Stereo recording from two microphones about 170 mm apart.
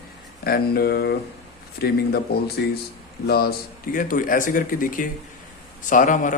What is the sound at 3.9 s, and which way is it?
Speech, 55° left (ahead or behind).